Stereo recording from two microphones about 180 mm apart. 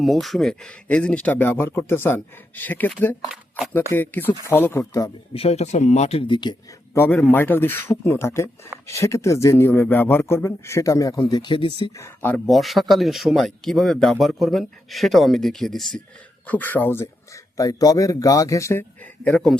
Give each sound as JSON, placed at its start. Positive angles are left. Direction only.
{"t": 0.0, "sound": "speech", "side_deg": 0}
{"t": 3.2, "sound": "speech", "side_deg": -5}
{"t": 3.9, "sound": "speech", "side_deg": 10}
{"t": 5.3, "sound": "speech", "side_deg": 35}
{"t": 6.9, "sound": "speech", "side_deg": 10}
{"t": 11.9, "sound": "speech", "side_deg": 15}
{"t": 12.5, "sound": "speech", "side_deg": 0}